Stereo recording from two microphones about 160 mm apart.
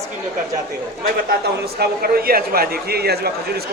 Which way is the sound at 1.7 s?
70° right (ahead or behind).